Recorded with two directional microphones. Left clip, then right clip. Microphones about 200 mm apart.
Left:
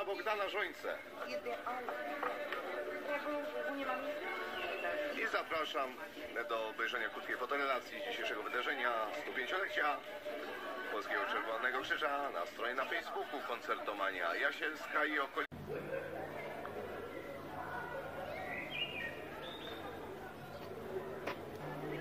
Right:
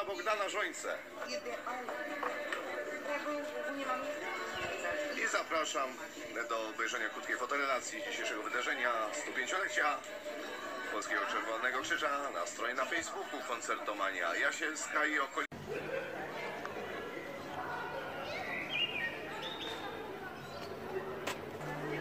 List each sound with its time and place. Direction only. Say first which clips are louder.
0.1 s a man's voice: right 3 dB; 35° left (ahead or behind)
2.1 s a sound: right 2 dB; 35° left (ahead or behind)
3.8 s a man's voice: right 2 dB; 35° left (ahead or behind)